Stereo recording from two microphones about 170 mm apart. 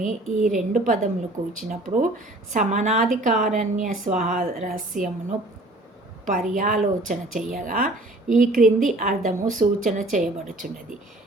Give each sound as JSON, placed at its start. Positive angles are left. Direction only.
{"t": 0.0, "sound": "speech", "side_deg": -50}
{"t": 6.2, "sound": "speech", "side_deg": -50}